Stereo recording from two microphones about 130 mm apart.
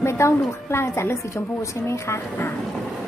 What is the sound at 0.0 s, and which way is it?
A woman's voice, 20° left (ahead or behind).